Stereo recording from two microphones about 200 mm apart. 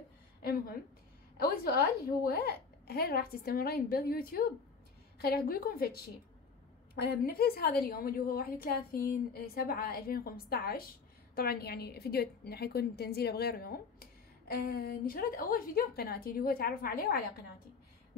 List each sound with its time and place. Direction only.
0.4 s a woman's voice: 50° left (ahead or behind)